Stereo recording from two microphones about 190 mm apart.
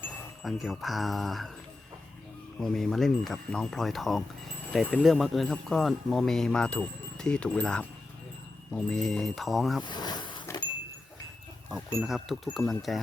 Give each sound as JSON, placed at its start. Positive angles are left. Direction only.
{"t": 0.4, "sound": "speech", "side_deg": 0}
{"t": 2.6, "sound": "speech", "side_deg": 0}
{"t": 9.8, "sound": "a sound", "side_deg": 20}
{"t": 11.9, "sound": "speech", "side_deg": 0}